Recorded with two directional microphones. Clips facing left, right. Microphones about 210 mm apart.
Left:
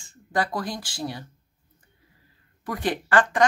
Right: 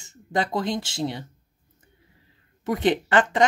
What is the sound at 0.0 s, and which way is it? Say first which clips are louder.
Speech: right 1 dB; 20° right (ahead or behind).